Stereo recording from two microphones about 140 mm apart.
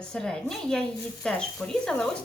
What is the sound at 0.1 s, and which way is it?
Speech, 5° left (ahead or behind).